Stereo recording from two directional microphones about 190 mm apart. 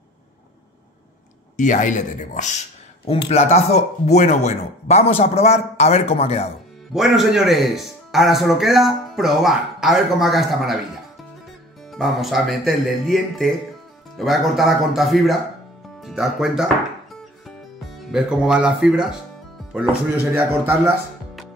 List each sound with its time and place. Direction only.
1.6 s speech: 40° left (ahead or behind)
6.9 s speech: centre (ahead or behind)
11.9 s speech: centre (ahead or behind)
18.1 s speech: 5° right (ahead or behind)